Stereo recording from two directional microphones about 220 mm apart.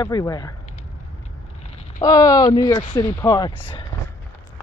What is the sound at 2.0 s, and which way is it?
Speech, 15° left (ahead or behind).